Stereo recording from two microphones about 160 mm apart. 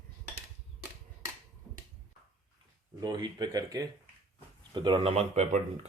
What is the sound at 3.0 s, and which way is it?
Speech, 25° right (ahead or behind).